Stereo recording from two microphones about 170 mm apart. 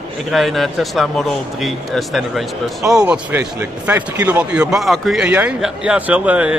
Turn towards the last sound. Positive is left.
turn(degrees=-5)  # may be behind; listen again after turning